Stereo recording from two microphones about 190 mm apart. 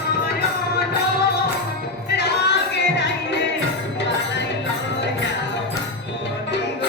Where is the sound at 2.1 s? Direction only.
60° left (ahead or behind).